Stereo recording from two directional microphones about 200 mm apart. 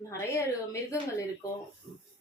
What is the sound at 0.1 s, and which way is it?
Speech, 15° left (ahead or behind).